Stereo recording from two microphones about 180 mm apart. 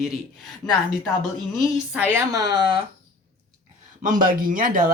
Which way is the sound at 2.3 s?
20° right (ahead or behind).